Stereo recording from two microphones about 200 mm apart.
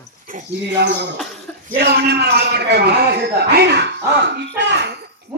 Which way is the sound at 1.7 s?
55° right (ahead or behind).